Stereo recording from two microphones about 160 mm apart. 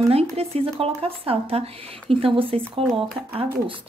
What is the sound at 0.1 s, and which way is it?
Speech, 40° right (ahead or behind).